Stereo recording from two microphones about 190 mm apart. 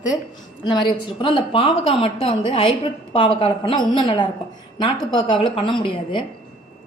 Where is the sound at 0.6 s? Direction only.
25° left (ahead or behind).